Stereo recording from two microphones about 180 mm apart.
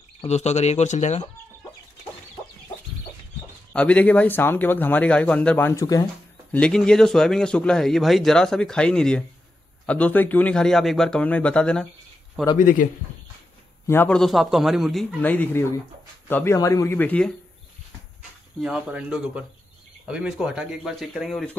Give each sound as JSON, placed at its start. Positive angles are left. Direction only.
{"t": 0.2, "sound": "speech", "side_deg": 35}
{"t": 3.7, "sound": "speech", "side_deg": 10}
{"t": 6.5, "sound": "speech", "side_deg": 5}
{"t": 12.5, "sound": "a man's voice", "side_deg": 50}
{"t": 13.8, "sound": "speech", "side_deg": 10}
{"t": 15.2, "sound": "speech", "side_deg": 10}
{"t": 18.6, "sound": "speech", "side_deg": -5}